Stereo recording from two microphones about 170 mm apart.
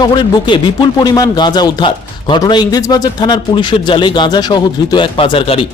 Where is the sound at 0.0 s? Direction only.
25° left (ahead or behind).